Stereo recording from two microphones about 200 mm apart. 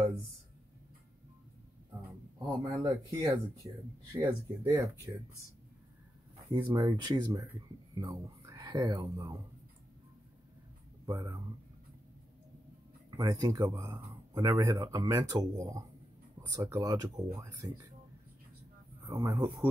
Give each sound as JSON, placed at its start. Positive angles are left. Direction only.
{"t": 2.4, "sound": "speech", "side_deg": -20}
{"t": 6.5, "sound": "speech", "side_deg": -15}
{"t": 11.1, "sound": "speech", "side_deg": -15}
{"t": 13.1, "sound": "speech", "side_deg": -20}
{"t": 19.0, "sound": "speech", "side_deg": -15}